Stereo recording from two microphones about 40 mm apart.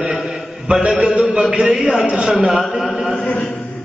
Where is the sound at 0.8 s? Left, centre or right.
Right.